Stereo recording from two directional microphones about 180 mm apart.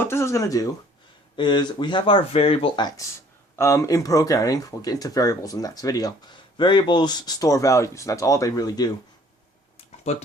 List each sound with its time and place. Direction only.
0.0 s speech: 15° left (ahead or behind)
3.5 s speech: 15° left (ahead or behind)
9.7 s a sound: 35° left (ahead or behind)